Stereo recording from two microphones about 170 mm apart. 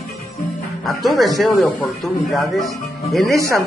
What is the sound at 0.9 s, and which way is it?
Speech, centre (ahead or behind).